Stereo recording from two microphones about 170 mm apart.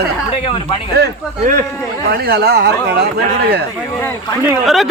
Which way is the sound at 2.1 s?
70° right (ahead or behind).